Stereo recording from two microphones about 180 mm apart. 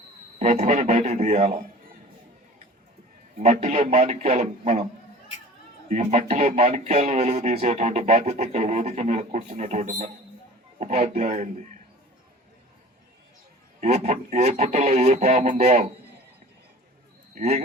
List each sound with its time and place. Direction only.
0.3 s speech: 40° right (ahead or behind)
3.3 s speech: 40° right (ahead or behind)
5.9 s speech: 40° right (ahead or behind)
13.8 s speech: 40° right (ahead or behind)
17.3 s speech: 40° right (ahead or behind)